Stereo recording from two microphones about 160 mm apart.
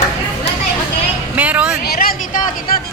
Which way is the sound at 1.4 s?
10° right (ahead or behind).